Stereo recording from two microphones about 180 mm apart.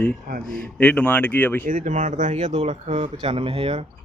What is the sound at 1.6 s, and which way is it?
Speech, 45° right (ahead or behind).